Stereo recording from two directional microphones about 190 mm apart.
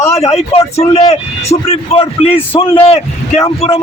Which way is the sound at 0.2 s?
35° left (ahead or behind).